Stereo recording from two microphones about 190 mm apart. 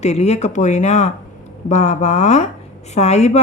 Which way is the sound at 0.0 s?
35° left (ahead or behind).